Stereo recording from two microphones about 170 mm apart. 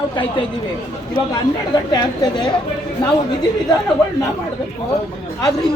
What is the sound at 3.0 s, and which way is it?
Speech, 25° left (ahead or behind).